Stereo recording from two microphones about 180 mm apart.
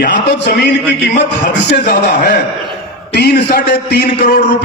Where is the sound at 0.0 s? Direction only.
70° left (ahead or behind).